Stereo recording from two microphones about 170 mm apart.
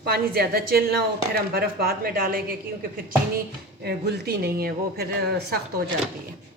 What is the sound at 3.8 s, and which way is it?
A woman's voice, 70° right (ahead or behind).